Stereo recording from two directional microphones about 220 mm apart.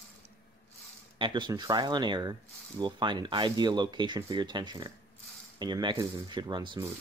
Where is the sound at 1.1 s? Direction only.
20° right (ahead or behind).